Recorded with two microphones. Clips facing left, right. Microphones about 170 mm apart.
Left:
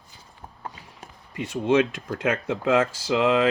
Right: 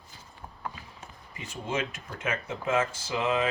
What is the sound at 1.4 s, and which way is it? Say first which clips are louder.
Speech: left 12 dB; 70° left (ahead or behind).